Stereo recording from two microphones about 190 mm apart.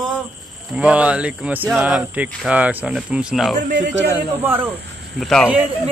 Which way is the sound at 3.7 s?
60° right (ahead or behind).